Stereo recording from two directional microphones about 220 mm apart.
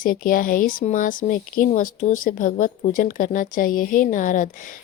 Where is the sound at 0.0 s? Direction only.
40° left (ahead or behind).